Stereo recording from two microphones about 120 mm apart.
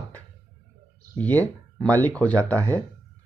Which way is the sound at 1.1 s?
15° left (ahead or behind).